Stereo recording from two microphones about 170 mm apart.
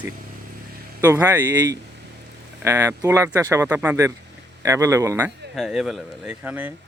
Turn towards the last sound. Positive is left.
turn(degrees=-10)  # may be behind; listen again after turning